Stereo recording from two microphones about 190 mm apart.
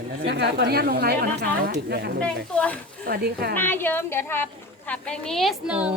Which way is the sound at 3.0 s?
55° right (ahead or behind).